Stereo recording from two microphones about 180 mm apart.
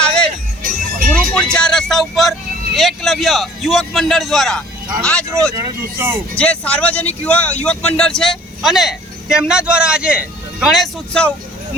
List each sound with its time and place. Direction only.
0.6 s music: 50° right (ahead or behind)
1.1 s speech: 5° left (ahead or behind)
5.5 s speech: 15° right (ahead or behind)
6.3 s speech: 5° left (ahead or behind)